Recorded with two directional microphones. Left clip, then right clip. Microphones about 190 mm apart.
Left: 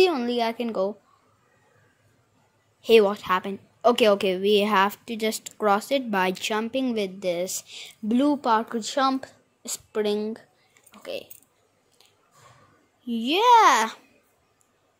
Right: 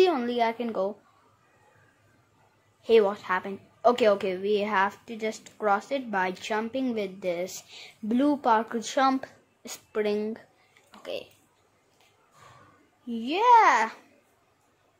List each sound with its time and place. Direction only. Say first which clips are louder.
0.0 s a woman's voice: left 2 dB; 25° left (ahead or behind)
2.8 s a woman's voice: left 3 dB; 35° left (ahead or behind)
10.9 s a sound: left 1 dB; 20° left (ahead or behind)
13.1 s a woman's voice: left 2 dB; 35° left (ahead or behind)